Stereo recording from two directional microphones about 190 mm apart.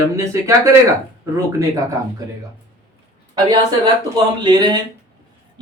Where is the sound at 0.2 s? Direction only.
15° right (ahead or behind).